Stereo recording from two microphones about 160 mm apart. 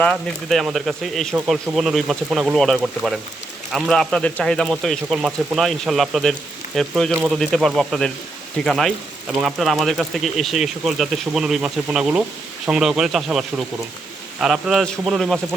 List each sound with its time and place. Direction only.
0.0 s speech: 5° left (ahead or behind)